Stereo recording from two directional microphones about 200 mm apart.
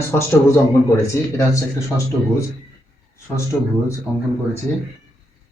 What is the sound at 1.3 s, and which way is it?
Speech, 15° left (ahead or behind).